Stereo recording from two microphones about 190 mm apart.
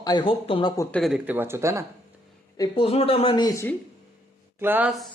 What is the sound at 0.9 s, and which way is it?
Speech, centre (ahead or behind).